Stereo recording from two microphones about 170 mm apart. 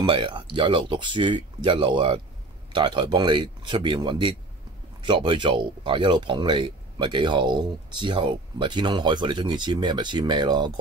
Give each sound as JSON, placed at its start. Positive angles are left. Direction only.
{"t": 0.0, "sound": "speech", "side_deg": -30}